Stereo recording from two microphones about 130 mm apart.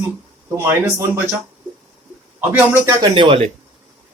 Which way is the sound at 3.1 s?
40° right (ahead or behind).